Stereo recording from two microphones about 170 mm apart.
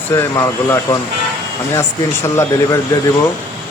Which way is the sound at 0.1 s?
15° left (ahead or behind).